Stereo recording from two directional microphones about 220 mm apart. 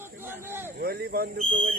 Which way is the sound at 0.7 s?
45° right (ahead or behind).